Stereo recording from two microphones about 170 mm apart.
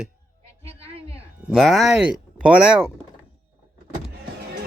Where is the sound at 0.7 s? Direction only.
35° right (ahead or behind).